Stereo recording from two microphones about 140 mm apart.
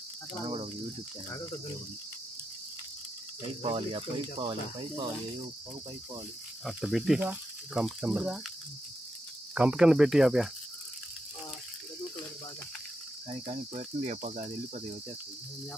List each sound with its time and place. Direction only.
3.6 s speech: 40° right (ahead or behind)
6.6 s speech: centre (ahead or behind)
9.6 s speech: 5° right (ahead or behind)
13.5 s cricket: 55° right (ahead or behind)